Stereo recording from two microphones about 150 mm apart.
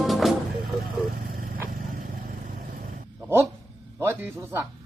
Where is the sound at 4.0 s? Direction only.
15° right (ahead or behind).